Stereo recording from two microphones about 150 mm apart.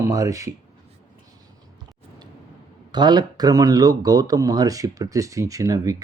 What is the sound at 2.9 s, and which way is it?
Speech, 30° right (ahead or behind).